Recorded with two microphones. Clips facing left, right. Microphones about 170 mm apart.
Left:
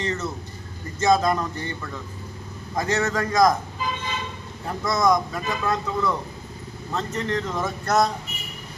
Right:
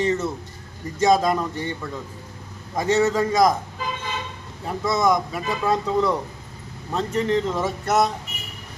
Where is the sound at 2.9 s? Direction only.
10° right (ahead or behind).